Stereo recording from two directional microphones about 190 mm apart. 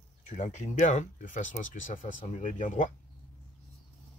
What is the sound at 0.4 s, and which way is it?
Speech, 35° left (ahead or behind).